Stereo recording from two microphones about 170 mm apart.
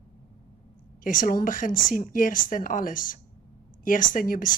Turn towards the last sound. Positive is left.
turn(degrees=55)  # may be behind; listen again after turning